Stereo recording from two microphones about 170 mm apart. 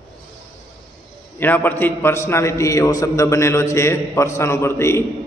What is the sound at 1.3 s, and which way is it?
A man's voice, 10° left (ahead or behind).